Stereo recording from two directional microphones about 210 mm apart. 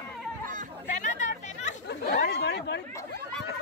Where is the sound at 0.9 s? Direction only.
35° left (ahead or behind).